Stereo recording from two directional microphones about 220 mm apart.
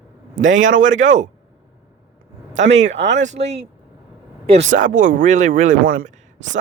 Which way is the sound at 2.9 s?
55° right (ahead or behind).